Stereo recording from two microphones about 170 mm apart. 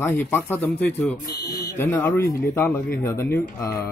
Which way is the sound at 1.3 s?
70° left (ahead or behind).